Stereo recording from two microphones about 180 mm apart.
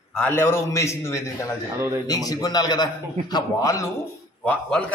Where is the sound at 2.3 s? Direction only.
20° left (ahead or behind).